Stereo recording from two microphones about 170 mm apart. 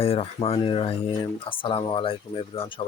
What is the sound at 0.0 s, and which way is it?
Speech, 35° left (ahead or behind).